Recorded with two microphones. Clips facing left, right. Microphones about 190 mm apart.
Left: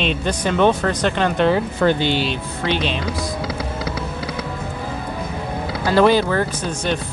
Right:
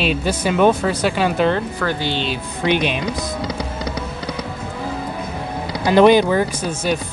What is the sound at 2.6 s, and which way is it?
Speech, 15° right (ahead or behind).